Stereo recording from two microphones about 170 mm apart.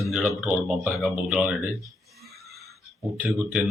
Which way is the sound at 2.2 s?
Centre (ahead or behind).